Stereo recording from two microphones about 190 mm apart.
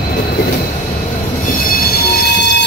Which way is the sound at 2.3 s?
65° left (ahead or behind).